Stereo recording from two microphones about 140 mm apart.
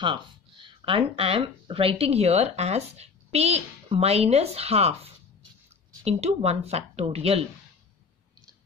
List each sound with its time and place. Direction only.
0.0 s speech: 35° right (ahead or behind)